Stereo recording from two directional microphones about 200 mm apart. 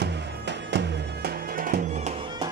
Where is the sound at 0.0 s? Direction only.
60° right (ahead or behind).